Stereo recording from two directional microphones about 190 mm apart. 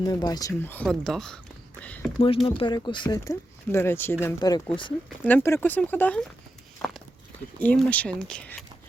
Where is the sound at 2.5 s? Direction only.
25° left (ahead or behind); by 6.2 s 10° left (ahead or behind).